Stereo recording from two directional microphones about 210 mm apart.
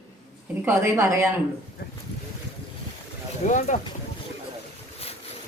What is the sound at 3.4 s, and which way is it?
Speech, 35° left (ahead or behind).